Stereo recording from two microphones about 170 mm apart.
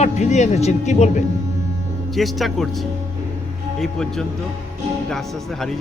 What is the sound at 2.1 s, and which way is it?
Speech, centre (ahead or behind).